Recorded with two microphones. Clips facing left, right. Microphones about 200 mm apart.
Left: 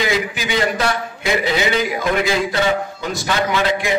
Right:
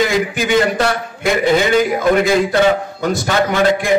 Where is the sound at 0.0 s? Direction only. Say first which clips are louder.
Right 5 dB; 50° right (ahead or behind).